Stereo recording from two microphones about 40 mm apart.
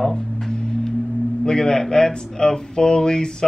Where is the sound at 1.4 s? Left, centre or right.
Centre.